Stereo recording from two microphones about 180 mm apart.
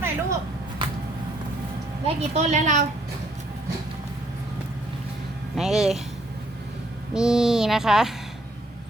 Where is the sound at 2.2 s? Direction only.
40° right (ahead or behind).